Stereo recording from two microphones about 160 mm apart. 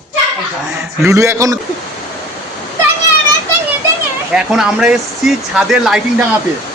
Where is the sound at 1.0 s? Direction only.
20° right (ahead or behind).